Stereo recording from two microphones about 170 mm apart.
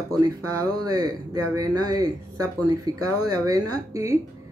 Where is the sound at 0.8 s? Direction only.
20° right (ahead or behind).